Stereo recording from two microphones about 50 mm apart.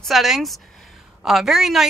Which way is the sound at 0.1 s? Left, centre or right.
Centre.